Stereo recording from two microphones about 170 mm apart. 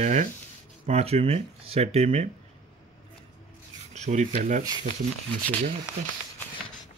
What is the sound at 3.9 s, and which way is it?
Speech, 45° right (ahead or behind).